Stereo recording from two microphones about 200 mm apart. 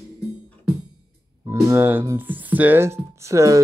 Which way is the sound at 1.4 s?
10° right (ahead or behind).